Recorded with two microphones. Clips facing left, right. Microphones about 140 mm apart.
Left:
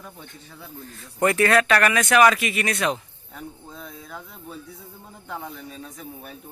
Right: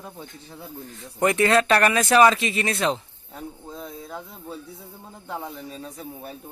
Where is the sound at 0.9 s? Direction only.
20° right (ahead or behind).